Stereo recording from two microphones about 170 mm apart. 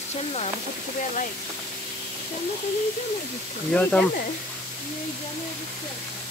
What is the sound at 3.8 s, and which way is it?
Speech, 10° left (ahead or behind).